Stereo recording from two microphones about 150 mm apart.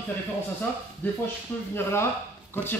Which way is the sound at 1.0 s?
10° left (ahead or behind).